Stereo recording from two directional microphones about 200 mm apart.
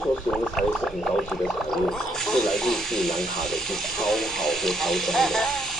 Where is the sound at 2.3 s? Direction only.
Centre (ahead or behind).